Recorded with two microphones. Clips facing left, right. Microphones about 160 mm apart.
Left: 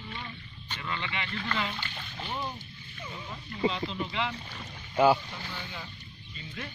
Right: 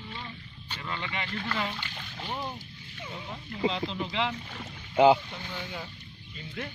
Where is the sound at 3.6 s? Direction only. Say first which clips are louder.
Even; 90° right.